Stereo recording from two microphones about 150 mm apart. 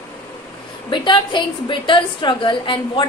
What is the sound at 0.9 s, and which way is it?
A woman's voice, 30° left (ahead or behind).